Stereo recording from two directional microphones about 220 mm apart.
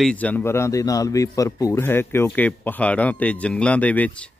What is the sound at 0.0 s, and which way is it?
A man's voice, 5° left (ahead or behind).